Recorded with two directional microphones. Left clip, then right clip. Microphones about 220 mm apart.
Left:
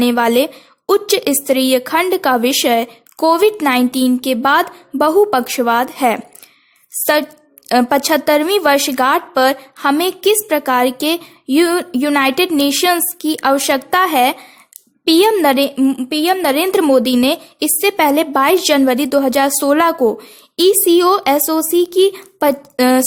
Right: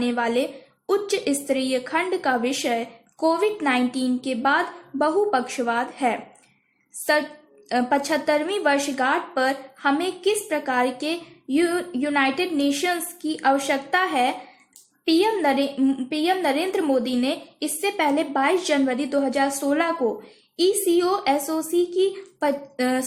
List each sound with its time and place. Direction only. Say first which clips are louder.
0.0 s speech: left 10 dB; 45° left (ahead or behind)
7.7 s speech: left 9 dB; 45° left (ahead or behind)